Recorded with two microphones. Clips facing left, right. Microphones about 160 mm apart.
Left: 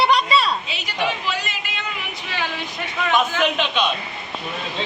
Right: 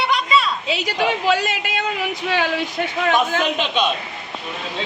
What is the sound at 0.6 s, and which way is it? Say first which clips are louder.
Speech: right 4 dB; 90° right.